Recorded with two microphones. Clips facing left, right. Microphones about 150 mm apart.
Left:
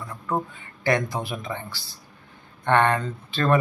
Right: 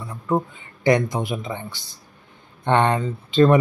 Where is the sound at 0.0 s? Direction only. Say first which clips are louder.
Right 5 dB; 10° right (ahead or behind).